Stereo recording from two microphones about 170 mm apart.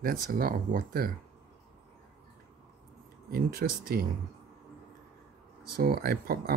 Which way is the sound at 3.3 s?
65° right (ahead or behind).